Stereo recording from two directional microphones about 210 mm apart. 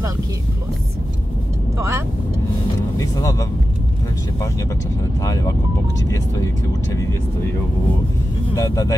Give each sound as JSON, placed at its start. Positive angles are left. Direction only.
{"t": 1.8, "sound": "speech", "side_deg": -15}
{"t": 3.0, "sound": "speech", "side_deg": 15}
{"t": 5.2, "sound": "speech", "side_deg": 15}
{"t": 8.5, "sound": "speech", "side_deg": 15}